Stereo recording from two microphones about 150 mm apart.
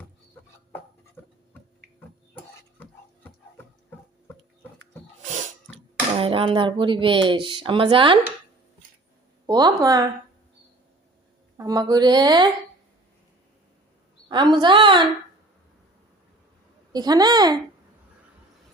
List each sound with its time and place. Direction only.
6.1 s speech: 35° right (ahead or behind)
9.5 s a woman's voice: 25° right (ahead or behind)
11.5 s a woman's voice: 25° right (ahead or behind)
14.3 s speech: 30° right (ahead or behind)
16.9 s a woman's voice: 25° right (ahead or behind)